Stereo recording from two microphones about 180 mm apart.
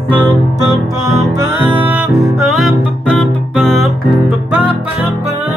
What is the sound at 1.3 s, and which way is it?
Music, 15° right (ahead or behind).